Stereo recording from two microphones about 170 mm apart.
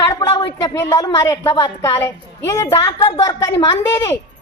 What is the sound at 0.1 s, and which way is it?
A woman's voice, 25° left (ahead or behind).